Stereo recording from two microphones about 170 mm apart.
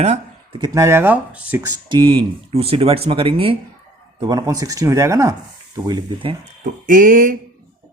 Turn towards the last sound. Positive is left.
turn(degrees=-50)  # may be behind; listen again after turning